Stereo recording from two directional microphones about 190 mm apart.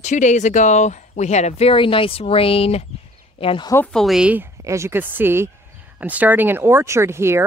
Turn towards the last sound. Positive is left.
turn(degrees=-15)  # may be behind; listen again after turning